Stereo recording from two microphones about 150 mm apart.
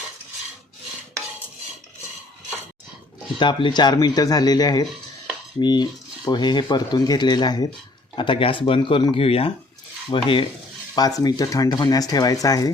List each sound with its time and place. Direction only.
3.3 s speech: 35° left (ahead or behind)